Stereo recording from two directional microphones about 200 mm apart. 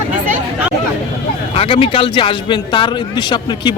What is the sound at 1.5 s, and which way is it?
Speech, 30° left (ahead or behind).